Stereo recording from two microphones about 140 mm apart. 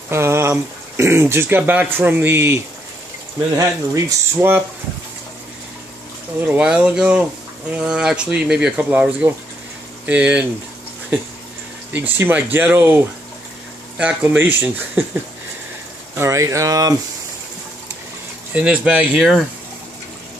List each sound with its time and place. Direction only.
0.1 s speech: 20° right (ahead or behind)
6.4 s speech: 10° right (ahead or behind)
11.9 s speech: 15° right (ahead or behind)
16.2 s speech: 20° right (ahead or behind)
18.5 s speech: 10° right (ahead or behind)